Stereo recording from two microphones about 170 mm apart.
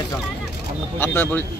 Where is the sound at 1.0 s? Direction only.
10° left (ahead or behind).